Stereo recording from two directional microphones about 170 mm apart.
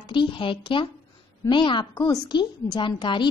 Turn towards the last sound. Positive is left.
turn(degrees=30)  # may be behind; listen again after turning